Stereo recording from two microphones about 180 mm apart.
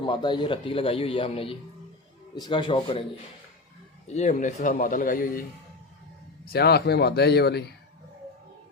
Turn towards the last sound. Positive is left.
turn(degrees=65)  # may be behind; listen again after turning